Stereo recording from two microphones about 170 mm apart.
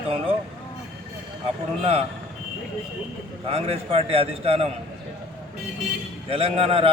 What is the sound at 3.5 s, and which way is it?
A man's voice, 35° right (ahead or behind).